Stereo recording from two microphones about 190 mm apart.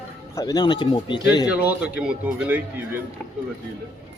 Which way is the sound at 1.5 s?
5° right (ahead or behind).